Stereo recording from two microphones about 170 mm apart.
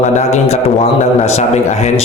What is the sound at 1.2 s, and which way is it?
Speech, 40° left (ahead or behind).